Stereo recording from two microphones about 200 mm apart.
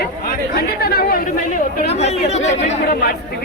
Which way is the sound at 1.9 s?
35° left (ahead or behind).